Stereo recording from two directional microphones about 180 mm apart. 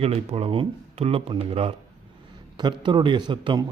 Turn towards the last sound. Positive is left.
turn(degrees=-25)  # may be behind; listen again after turning